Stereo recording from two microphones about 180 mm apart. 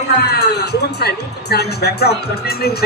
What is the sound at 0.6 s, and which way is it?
Speech, 65° left (ahead or behind).